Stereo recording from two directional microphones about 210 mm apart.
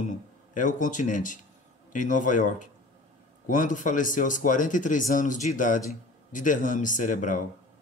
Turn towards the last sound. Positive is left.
turn(degrees=40)  # may be behind; listen again after turning